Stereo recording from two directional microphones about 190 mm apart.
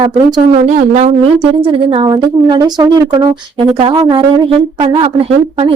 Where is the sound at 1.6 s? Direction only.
30° right (ahead or behind).